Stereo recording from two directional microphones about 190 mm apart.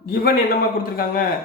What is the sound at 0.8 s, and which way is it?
Speech, 50° left (ahead or behind).